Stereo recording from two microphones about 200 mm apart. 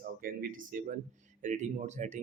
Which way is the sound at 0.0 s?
45° right (ahead or behind).